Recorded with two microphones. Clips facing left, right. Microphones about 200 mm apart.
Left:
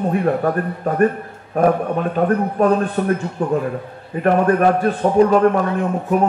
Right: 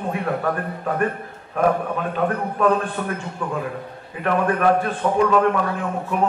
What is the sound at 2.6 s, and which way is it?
A man's voice, 40° left (ahead or behind).